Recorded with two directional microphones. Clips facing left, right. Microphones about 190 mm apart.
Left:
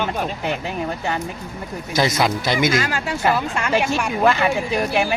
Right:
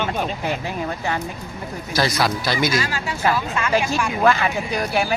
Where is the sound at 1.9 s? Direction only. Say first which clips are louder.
Left 2 dB; 20° left (ahead or behind).